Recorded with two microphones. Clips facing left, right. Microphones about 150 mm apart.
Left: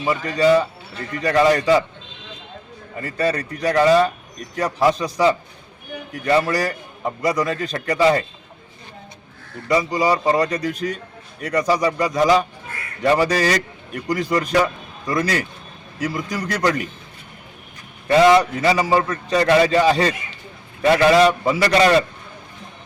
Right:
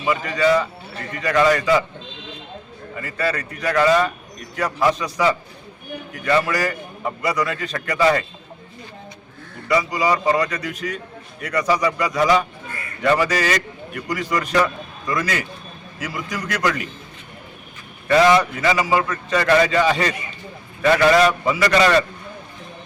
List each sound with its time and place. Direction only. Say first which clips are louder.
0.0 s a man's voice: left 1 dB; 35° left (ahead or behind)
3.0 s a man's voice: left 3 dB; 35° left (ahead or behind)
9.6 s a man's voice: left 1 dB; 35° left (ahead or behind)
18.1 s a man's voice: left 2 dB; 30° left (ahead or behind)